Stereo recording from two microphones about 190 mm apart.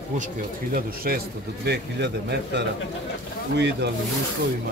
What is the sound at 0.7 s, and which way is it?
Speech, 50° right (ahead or behind).